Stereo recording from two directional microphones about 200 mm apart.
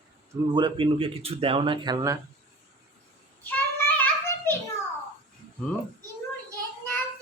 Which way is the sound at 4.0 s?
10° left (ahead or behind).